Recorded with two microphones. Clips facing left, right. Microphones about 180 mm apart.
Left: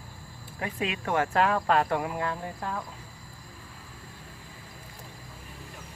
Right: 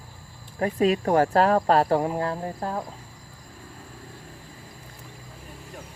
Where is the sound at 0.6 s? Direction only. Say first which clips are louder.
Right 10 dB; 40° right (ahead or behind).